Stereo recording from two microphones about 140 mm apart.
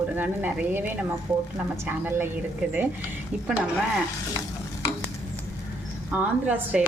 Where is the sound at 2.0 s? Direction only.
15° right (ahead or behind).